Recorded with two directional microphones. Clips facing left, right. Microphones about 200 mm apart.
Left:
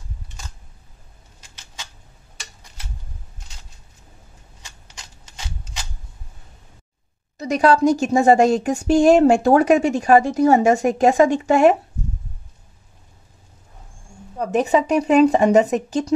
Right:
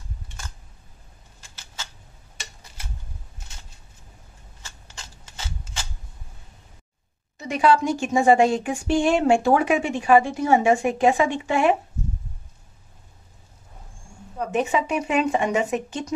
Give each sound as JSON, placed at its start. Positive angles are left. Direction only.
{"t": 7.3, "sound": "a woman's voice", "side_deg": 40}
{"t": 14.5, "sound": "a woman's voice", "side_deg": 40}